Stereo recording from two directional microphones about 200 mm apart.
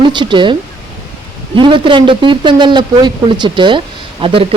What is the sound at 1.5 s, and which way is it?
A man's voice, 25° right (ahead or behind).